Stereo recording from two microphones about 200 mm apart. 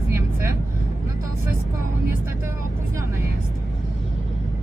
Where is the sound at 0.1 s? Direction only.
10° right (ahead or behind).